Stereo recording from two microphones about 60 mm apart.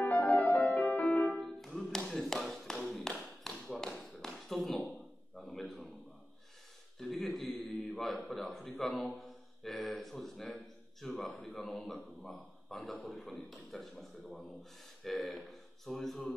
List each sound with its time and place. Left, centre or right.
0.0 s music: left
1.4 s music: centre
2.0 s tap: centre
5.3 s a sound: centre
7.0 s a sound: centre
11.4 s speech: centre